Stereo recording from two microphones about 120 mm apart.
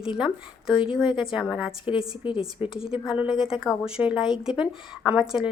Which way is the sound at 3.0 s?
10° right (ahead or behind).